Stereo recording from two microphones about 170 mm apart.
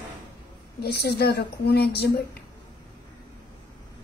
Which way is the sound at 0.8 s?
70° left (ahead or behind).